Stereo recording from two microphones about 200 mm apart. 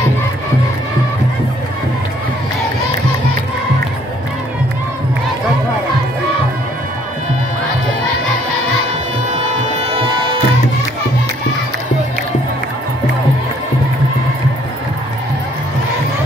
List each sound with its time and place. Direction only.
9.9 s music: 25° right (ahead or behind)